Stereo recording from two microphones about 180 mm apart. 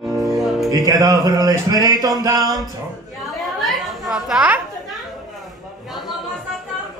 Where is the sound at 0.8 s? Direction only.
20° right (ahead or behind).